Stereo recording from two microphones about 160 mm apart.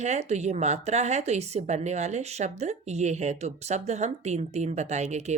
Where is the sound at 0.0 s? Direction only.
45° right (ahead or behind).